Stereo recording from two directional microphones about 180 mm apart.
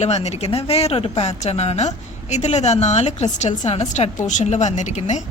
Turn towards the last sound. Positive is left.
turn(degrees=40)  # may be behind; listen again after turning